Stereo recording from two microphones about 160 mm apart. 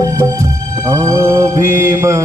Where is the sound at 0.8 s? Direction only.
20° right (ahead or behind).